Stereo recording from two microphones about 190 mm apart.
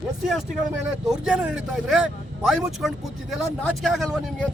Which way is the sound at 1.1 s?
5° right (ahead or behind).